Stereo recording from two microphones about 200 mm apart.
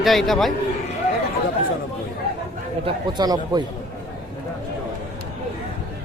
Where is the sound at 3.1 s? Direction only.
20° right (ahead or behind).